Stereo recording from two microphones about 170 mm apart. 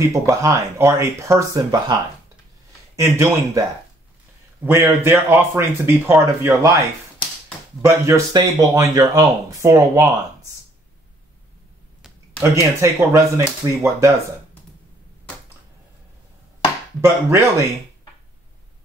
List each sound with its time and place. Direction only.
0.1 s speech: 20° right (ahead or behind)
3.0 s speech: 15° right (ahead or behind)
4.6 s speech: 15° right (ahead or behind)
7.8 s speech: 20° right (ahead or behind)
12.4 s speech: 15° right (ahead or behind)
17.0 s speech: 15° right (ahead or behind)